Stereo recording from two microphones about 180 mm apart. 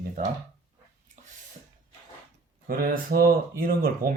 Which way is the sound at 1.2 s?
45° right (ahead or behind).